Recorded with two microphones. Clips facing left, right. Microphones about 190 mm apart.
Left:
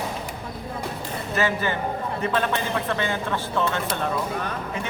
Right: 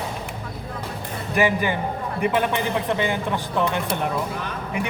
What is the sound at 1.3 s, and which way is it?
A man's voice, 15° right (ahead or behind).